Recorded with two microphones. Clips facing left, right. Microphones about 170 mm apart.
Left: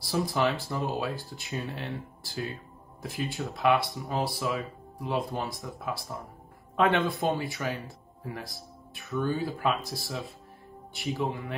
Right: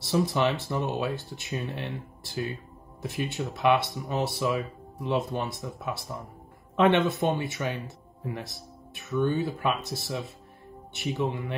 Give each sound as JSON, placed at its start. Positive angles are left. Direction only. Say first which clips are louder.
{"t": 0.0, "sound": "speech", "louder": "right 2 dB", "side_deg": -25}